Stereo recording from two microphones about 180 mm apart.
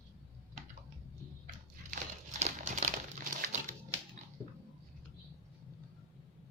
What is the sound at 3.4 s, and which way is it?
Dog, 45° right (ahead or behind).